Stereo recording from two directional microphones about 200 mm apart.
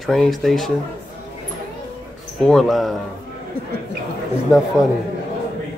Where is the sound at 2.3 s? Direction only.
Centre (ahead or behind).